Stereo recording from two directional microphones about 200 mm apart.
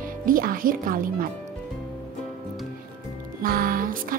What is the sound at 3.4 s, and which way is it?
Music, 45° right (ahead or behind).